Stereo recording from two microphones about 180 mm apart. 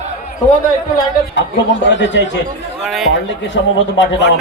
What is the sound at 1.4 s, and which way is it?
Speech, 85° left.